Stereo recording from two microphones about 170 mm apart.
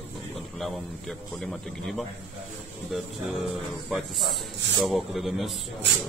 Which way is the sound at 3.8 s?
Centre (ahead or behind).